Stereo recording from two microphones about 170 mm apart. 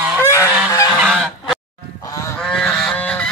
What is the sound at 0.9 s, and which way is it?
Goose, 5° right (ahead or behind).